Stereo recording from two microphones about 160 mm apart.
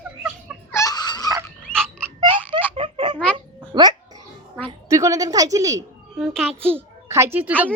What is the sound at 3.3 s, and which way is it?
Babbling, 25° right (ahead or behind).